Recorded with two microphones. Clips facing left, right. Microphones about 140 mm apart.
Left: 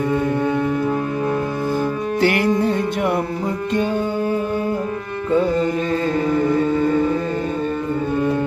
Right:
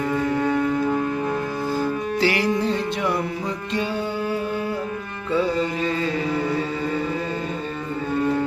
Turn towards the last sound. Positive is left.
turn(degrees=50)  # may be behind; listen again after turning